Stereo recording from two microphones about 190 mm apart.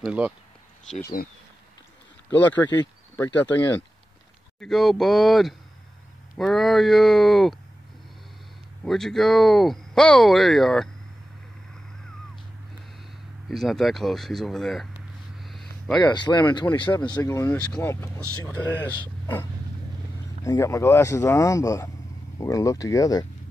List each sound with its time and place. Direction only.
0.0 s speech: 5° right (ahead or behind)
1.0 s speech: 55° left (ahead or behind)
2.3 s speech: 10° left (ahead or behind)
4.6 s speech: centre (ahead or behind)
8.8 s speech: centre (ahead or behind)
13.5 s speech: centre (ahead or behind)
15.3 s a sound: centre (ahead or behind)
16.0 s speech: 25° left (ahead or behind)
20.4 s speech: 15° left (ahead or behind)